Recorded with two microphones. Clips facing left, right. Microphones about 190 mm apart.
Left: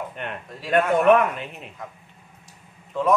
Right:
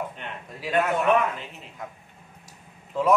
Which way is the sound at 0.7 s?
60° left (ahead or behind).